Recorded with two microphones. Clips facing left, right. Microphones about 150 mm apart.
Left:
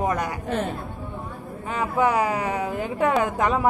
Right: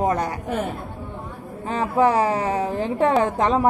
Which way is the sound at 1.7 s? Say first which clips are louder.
Right 3 dB; 35° right (ahead or behind).